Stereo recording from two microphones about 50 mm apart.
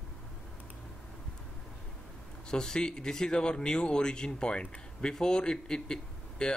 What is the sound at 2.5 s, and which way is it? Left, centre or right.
Speech, centre.